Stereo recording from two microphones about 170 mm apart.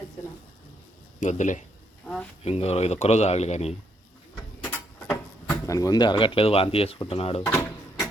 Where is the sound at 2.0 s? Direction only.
5° left (ahead or behind).